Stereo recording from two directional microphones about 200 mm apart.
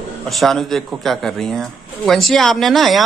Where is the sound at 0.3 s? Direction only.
Centre (ahead or behind).